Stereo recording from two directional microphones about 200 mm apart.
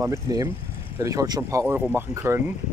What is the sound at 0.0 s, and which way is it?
Speech, 15° right (ahead or behind).